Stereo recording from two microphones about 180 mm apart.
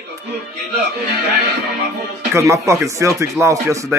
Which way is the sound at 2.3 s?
15° right (ahead or behind).